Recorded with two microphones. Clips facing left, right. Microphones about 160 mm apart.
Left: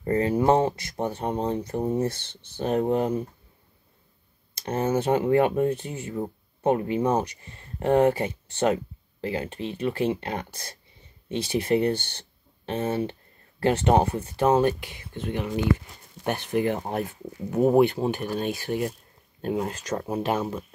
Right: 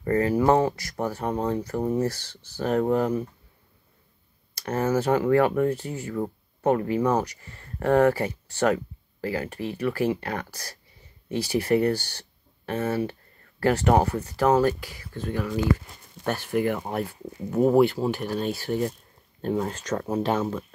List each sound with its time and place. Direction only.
0.0 s speech: 25° left (ahead or behind)
4.6 s speech: 20° left (ahead or behind)